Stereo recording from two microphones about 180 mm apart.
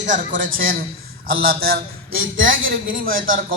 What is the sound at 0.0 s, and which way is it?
A man's voice, 45° right (ahead or behind).